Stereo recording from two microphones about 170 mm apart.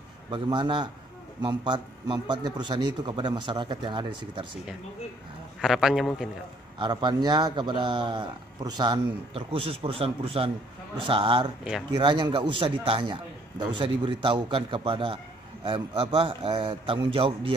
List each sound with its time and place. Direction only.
0.3 s a man's voice: 30° right (ahead or behind)
5.6 s a man's voice: 5° right (ahead or behind)
6.8 s a man's voice: 25° right (ahead or behind)